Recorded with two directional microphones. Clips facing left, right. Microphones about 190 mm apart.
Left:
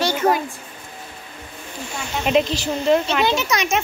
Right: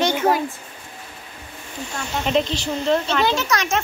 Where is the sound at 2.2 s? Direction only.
10° left (ahead or behind).